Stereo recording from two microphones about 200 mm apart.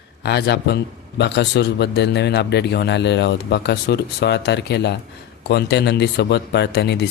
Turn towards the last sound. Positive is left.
turn(degrees=55)  # may be behind; listen again after turning